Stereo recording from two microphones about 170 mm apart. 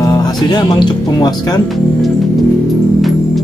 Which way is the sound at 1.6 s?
Centre (ahead or behind).